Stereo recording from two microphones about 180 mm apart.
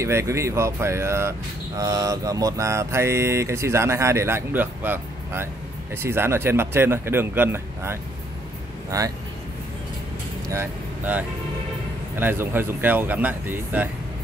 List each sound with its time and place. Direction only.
0.0 s speech: 15° right (ahead or behind)
10.5 s speech: 10° right (ahead or behind)